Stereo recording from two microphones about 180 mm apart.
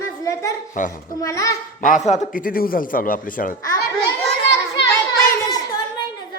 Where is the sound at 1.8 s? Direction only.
45° left (ahead or behind).